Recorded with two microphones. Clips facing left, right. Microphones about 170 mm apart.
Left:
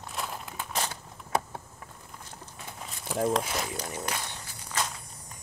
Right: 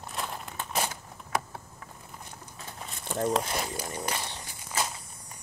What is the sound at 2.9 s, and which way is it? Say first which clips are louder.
Speech: left 1 dB; centre (ahead or behind).